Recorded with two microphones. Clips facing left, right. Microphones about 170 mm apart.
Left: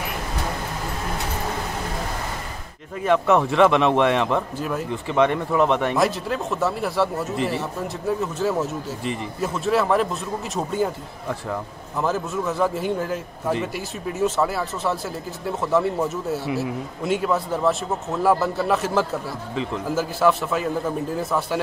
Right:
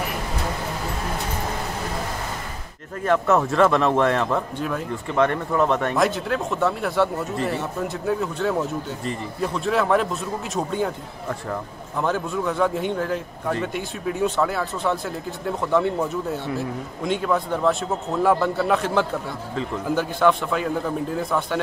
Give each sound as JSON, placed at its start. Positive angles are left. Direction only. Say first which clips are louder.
{"t": 3.0, "sound": "speech", "louder": "left 1 dB", "side_deg": 0}
{"t": 12.0, "sound": "speech", "louder": "even", "side_deg": 0}